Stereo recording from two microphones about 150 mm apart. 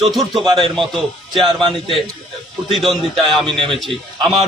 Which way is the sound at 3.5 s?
35° right (ahead or behind).